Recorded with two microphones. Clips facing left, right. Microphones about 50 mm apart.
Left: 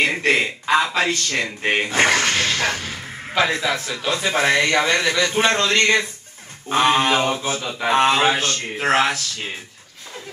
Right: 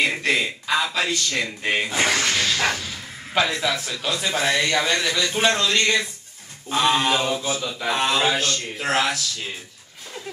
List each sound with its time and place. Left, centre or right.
0.2 s speech: left